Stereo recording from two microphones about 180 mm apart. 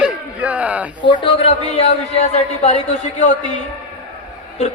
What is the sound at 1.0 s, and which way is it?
Speech, 25° left (ahead or behind).